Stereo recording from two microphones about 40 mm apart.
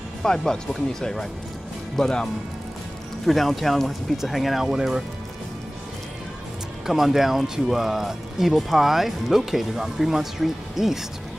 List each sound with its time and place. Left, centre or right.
0.2 s speech: centre
2.0 s speech: centre
3.3 s speech: centre
4.7 s speech: centre
6.9 s speech: centre